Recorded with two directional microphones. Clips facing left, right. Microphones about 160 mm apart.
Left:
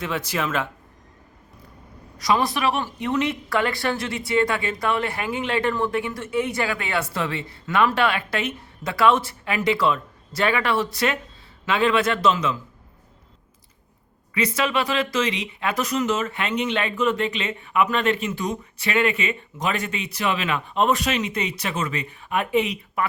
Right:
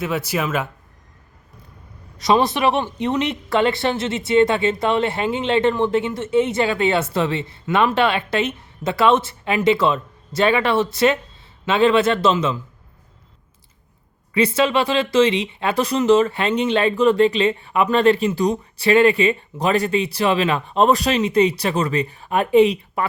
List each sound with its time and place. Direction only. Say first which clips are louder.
0.0 s speech: right 4 dB; 10° right (ahead or behind)
2.1 s speech: right 5 dB; 25° right (ahead or behind)
14.3 s speech: right 6 dB; 30° right (ahead or behind)